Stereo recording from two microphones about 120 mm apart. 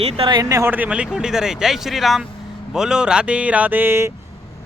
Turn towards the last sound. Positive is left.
turn(degrees=-20)  # may be behind; listen again after turning